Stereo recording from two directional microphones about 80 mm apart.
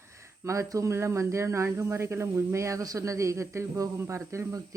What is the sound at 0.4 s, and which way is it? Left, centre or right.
Speech, right.